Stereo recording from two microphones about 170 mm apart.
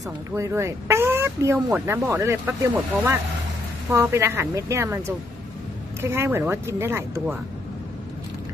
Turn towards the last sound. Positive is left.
turn(degrees=-15)  # may be behind; listen again after turning